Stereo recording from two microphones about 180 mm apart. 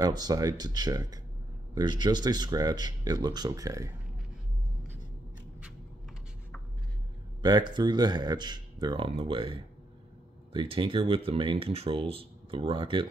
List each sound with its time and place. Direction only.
0.0 s speech: 20° right (ahead or behind)
7.4 s speech: 25° right (ahead or behind)